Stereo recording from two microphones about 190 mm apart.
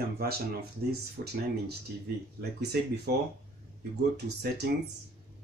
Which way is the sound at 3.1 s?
55° right (ahead or behind).